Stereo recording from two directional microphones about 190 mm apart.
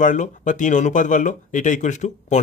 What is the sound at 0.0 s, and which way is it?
Speech, 40° left (ahead or behind).